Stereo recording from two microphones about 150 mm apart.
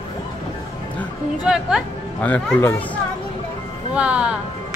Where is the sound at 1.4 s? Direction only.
5° right (ahead or behind).